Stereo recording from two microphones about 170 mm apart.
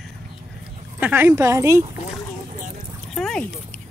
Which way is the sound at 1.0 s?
10° right (ahead or behind).